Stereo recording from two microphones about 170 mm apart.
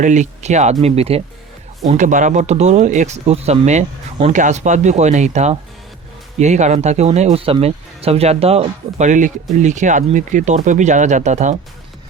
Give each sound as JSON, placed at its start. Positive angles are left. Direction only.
{"t": 0.0, "sound": "speech", "side_deg": -45}
{"t": 1.9, "sound": "speech", "side_deg": -45}